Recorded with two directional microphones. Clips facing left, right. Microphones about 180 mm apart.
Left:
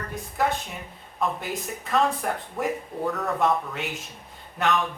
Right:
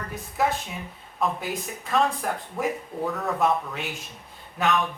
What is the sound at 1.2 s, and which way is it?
Speech, centre (ahead or behind).